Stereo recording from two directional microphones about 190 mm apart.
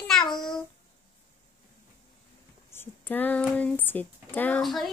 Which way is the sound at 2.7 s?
10° left (ahead or behind).